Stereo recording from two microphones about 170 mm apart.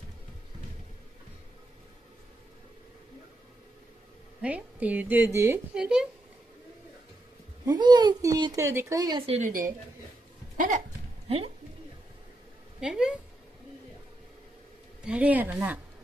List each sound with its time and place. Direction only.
4.4 s a woman's voice: 10° right (ahead or behind)
5.8 s a woman's voice: 5° right (ahead or behind)
7.6 s speech: 25° right (ahead or behind)
9.2 s a woman's voice: 35° right (ahead or behind)
11.2 s a sound: 35° right (ahead or behind)
12.8 s a sound: 5° right (ahead or behind)
15.0 s a woman's voice: 10° right (ahead or behind)